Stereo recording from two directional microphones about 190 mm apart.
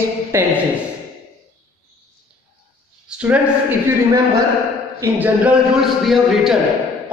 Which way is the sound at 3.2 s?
10° right (ahead or behind).